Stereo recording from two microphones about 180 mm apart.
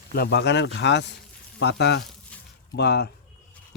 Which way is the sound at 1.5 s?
70° left (ahead or behind).